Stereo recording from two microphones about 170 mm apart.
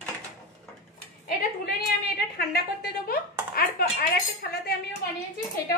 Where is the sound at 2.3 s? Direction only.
65° left (ahead or behind).